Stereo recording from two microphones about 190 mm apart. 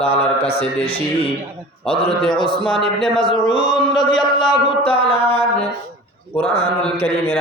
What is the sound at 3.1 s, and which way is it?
Chant, 25° left (ahead or behind).